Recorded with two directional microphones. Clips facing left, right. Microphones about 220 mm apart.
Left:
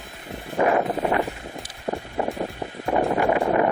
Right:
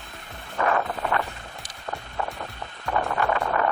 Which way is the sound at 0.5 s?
15° left (ahead or behind).